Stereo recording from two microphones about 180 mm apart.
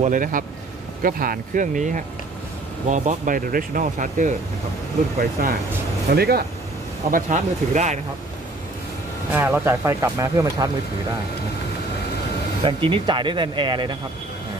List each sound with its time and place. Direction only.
0.0 s speech: 50° right (ahead or behind)
5.4 s speech: 55° right (ahead or behind)
7.1 s speech: 45° right (ahead or behind)
9.3 s speech: 10° right (ahead or behind)
12.6 s speech: 30° right (ahead or behind)